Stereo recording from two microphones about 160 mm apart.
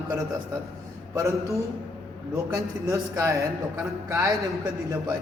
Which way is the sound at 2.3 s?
20° right (ahead or behind).